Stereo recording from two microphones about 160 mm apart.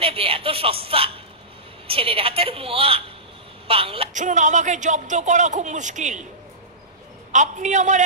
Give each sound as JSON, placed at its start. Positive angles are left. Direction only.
{"t": 0.0, "sound": "speech", "side_deg": -35}
{"t": 4.1, "sound": "speech", "side_deg": -50}
{"t": 7.3, "sound": "speech", "side_deg": -50}